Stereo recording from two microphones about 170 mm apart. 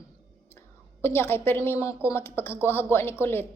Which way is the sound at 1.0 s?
15° left (ahead or behind).